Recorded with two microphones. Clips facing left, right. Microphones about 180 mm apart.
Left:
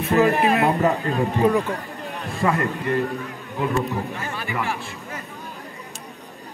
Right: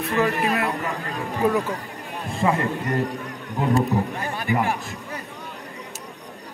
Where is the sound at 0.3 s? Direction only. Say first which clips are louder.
Left 5 dB; 60° left (ahead or behind).